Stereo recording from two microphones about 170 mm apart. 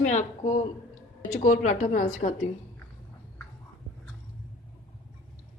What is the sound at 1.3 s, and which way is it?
A woman's voice, 45° left (ahead or behind).